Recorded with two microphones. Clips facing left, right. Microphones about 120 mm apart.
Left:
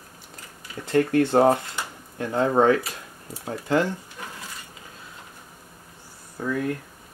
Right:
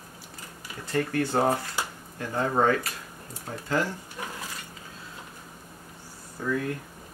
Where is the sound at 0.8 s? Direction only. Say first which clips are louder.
Left 7 dB; 20° left (ahead or behind).